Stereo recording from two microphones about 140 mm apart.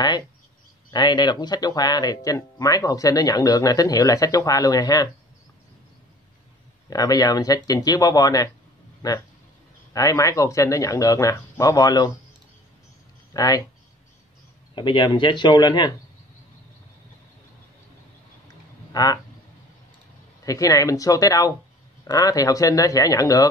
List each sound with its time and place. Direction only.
0.9 s speech: 30° left (ahead or behind)
6.9 s speech: 25° left (ahead or behind)
13.3 s speech: 25° left (ahead or behind)
14.8 s speech: 35° left (ahead or behind)
18.9 s a sound: 25° left (ahead or behind)
20.4 s speech: 25° left (ahead or behind)